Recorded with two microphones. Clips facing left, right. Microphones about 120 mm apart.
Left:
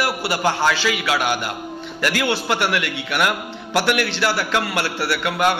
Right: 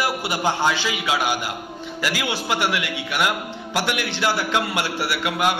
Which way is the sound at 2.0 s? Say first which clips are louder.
Left 4 dB; 10° right (ahead or behind).